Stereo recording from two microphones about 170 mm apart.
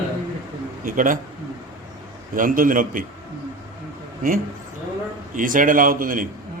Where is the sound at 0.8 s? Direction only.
50° right (ahead or behind).